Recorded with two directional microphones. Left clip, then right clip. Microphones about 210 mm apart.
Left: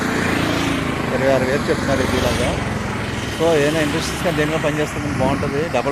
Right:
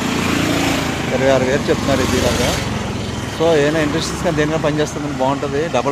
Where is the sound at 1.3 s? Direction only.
10° right (ahead or behind).